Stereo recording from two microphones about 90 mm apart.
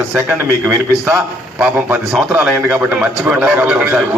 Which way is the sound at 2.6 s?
15° right (ahead or behind).